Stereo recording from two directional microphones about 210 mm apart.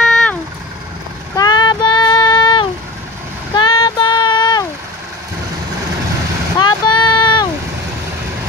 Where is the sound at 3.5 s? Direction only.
20° left (ahead or behind).